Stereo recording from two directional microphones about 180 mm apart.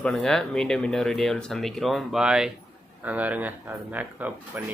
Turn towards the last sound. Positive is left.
turn(degrees=-10)  # may be behind; listen again after turning